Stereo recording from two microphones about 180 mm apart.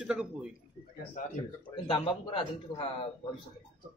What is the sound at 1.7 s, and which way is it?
Speech, 30° left (ahead or behind).